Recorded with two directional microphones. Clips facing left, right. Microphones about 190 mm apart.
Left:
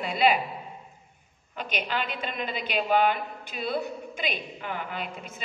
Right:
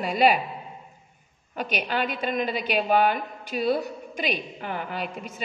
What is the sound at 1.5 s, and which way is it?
A woman's voice, 45° right (ahead or behind).